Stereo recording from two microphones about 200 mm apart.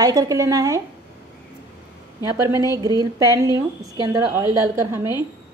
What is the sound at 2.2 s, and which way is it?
A woman's voice, 15° right (ahead or behind).